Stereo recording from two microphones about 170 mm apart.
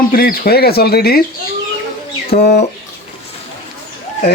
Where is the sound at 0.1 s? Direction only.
60° left (ahead or behind).